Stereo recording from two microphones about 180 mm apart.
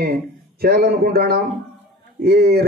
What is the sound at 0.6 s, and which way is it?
A man's voice, 60° right (ahead or behind).